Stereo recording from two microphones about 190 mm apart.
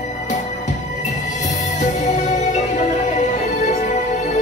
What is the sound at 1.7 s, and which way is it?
Music, 40° left (ahead or behind).